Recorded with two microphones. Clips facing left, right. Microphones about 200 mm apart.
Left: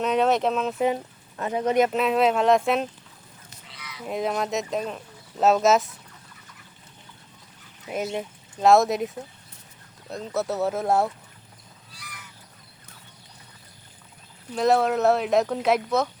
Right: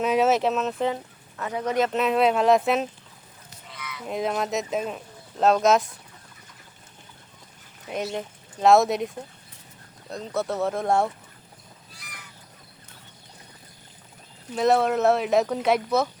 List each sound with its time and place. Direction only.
0.0 s speech: 5° right (ahead or behind)
1.4 s speech: 25° left (ahead or behind)
1.9 s speech: centre (ahead or behind)
3.7 s frog: 55° right (ahead or behind)
4.0 s speech: centre (ahead or behind)
7.9 s speech: 5° left (ahead or behind)
14.5 s speech: centre (ahead or behind)